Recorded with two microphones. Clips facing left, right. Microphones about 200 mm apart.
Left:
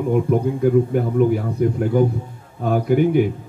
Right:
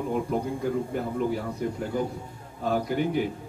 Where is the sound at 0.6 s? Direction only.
60° left (ahead or behind).